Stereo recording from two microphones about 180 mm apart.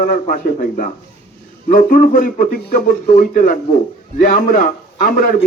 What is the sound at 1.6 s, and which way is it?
A man's voice, 50° left (ahead or behind).